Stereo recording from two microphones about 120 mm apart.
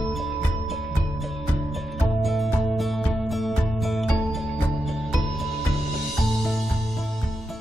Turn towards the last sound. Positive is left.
turn(degrees=0)  # may be behind; listen again after turning